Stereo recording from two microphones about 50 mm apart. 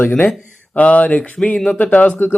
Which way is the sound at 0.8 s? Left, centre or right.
Left.